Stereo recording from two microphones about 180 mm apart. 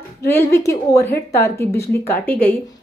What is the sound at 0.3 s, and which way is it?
A woman's voice, 15° left (ahead or behind).